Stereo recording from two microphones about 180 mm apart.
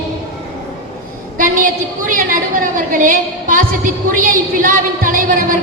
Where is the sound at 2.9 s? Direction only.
50° right (ahead or behind).